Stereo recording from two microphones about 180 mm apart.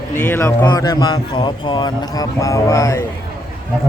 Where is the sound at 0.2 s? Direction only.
10° left (ahead or behind).